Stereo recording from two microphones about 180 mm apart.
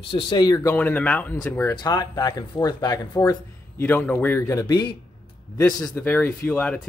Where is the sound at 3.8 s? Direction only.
10° left (ahead or behind).